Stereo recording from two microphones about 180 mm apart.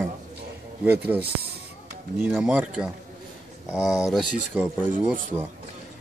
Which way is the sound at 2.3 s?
5° right (ahead or behind).